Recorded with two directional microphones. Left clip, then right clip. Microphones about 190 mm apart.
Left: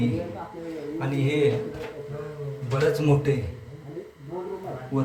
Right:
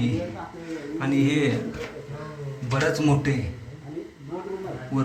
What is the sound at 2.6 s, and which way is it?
Speech, centre (ahead or behind).